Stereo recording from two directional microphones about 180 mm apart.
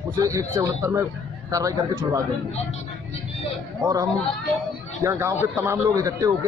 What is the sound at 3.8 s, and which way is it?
Speech, 20° right (ahead or behind).